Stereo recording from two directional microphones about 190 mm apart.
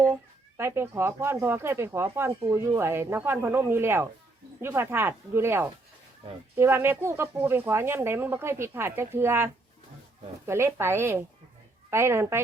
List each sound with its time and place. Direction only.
0.0 s speech: 15° right (ahead or behind)